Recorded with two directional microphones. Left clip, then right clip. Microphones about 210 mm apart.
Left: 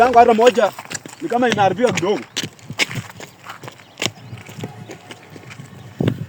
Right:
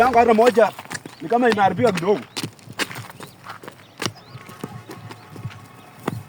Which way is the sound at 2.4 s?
20° right (ahead or behind).